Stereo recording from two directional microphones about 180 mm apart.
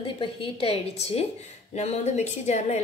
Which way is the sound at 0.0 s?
30° left (ahead or behind).